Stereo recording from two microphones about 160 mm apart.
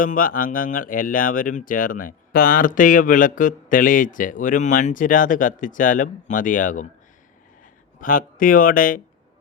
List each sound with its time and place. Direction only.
0.0 s speech: 60° left (ahead or behind)
8.0 s speech: 60° left (ahead or behind)